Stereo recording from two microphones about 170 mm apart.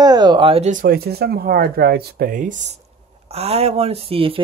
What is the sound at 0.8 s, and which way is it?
Speech, 65° right (ahead or behind).